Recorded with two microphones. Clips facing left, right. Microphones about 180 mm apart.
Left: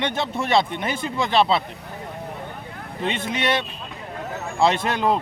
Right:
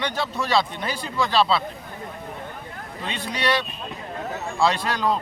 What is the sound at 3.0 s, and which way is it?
Speech, 20° left (ahead or behind).